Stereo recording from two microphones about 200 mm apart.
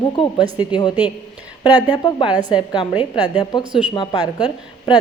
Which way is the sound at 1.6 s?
20° left (ahead or behind).